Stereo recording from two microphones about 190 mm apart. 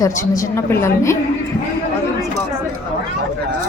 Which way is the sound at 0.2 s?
15° left (ahead or behind).